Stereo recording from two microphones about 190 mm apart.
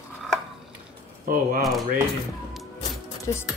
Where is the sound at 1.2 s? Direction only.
50° right (ahead or behind).